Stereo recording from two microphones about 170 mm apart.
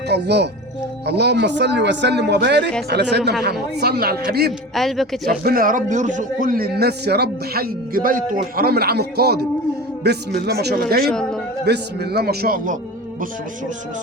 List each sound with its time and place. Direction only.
0.1 s speech: 80° right
3.8 s a man's voice: 70° right (ahead or behind)
4.7 s speech: centre (ahead or behind)
5.3 s a man's voice: 60° right (ahead or behind)
11.1 s speech: 5° left (ahead or behind)
11.6 s a man's voice: 75° right (ahead or behind); by 12.7 s 55° right (ahead or behind)